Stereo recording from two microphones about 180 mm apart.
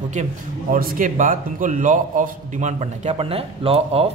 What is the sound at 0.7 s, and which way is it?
A man's voice, 50° right (ahead or behind).